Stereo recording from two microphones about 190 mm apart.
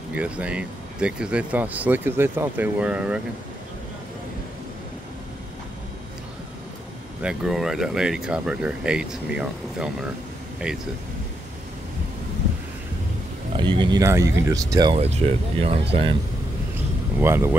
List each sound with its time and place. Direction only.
0.1 s speech: 5° right (ahead or behind)
7.2 s speech: 5° right (ahead or behind)
13.6 s speech: 25° right (ahead or behind)
15.0 s speech: 30° right (ahead or behind)
17.2 s speech: 15° right (ahead or behind)